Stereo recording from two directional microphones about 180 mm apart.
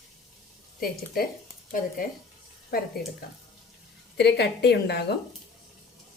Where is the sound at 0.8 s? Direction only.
55° left (ahead or behind).